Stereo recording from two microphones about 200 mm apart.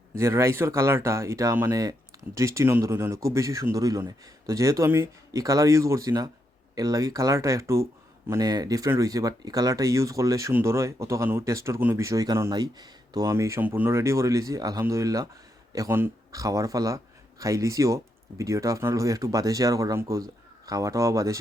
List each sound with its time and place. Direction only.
0.2 s speech: 15° right (ahead or behind)